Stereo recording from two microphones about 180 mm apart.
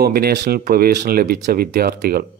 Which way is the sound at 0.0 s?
60° right (ahead or behind).